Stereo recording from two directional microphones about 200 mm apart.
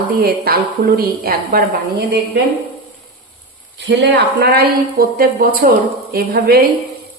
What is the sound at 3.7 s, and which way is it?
Speech, 60° right (ahead or behind).